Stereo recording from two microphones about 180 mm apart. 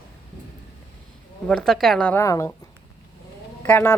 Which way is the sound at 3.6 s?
10° left (ahead or behind).